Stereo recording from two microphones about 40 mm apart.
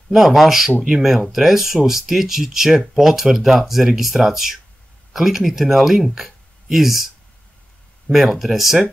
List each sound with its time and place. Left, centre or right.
0.1 s speech: centre
8.1 s speech: centre